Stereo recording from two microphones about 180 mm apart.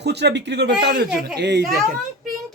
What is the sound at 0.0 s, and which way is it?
Speech, 70° right (ahead or behind).